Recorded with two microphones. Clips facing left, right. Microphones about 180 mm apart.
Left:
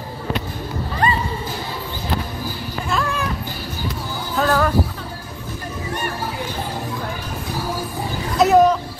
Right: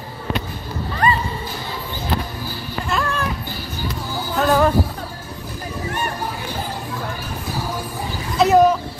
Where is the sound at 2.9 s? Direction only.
Centre (ahead or behind).